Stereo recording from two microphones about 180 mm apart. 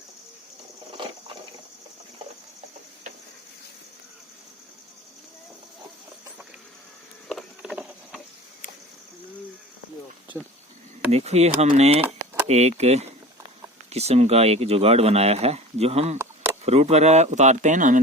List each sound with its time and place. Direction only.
1.0 s water: 25° right (ahead or behind)
7.3 s clip-clop: centre (ahead or behind)
11.1 s speech: 35° right (ahead or behind)